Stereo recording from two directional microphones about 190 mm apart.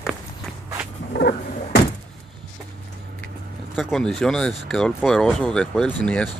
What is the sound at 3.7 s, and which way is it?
Speech, centre (ahead or behind).